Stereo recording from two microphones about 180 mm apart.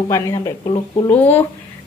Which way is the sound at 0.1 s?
15° left (ahead or behind).